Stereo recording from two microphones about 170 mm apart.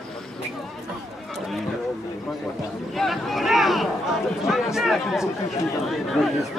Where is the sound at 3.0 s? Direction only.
Centre (ahead or behind).